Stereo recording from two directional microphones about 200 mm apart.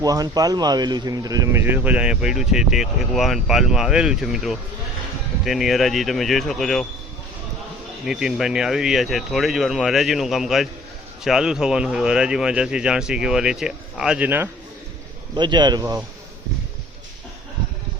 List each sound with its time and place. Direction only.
0.0 s speech: 20° right (ahead or behind); by 6.8 s centre (ahead or behind)
8.0 s speech: centre (ahead or behind)
15.4 s speech: 20° right (ahead or behind)